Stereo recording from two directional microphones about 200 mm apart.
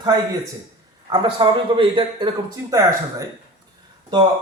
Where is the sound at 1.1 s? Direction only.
25° right (ahead or behind).